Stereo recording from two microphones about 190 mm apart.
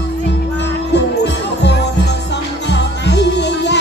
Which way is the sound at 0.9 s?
65° left (ahead or behind).